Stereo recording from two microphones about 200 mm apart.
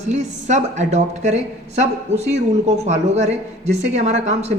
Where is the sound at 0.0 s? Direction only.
35° right (ahead or behind).